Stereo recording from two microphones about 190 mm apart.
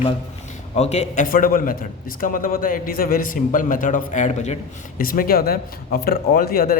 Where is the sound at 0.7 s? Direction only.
35° left (ahead or behind).